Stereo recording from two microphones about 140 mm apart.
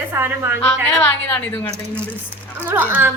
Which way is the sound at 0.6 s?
15° left (ahead or behind).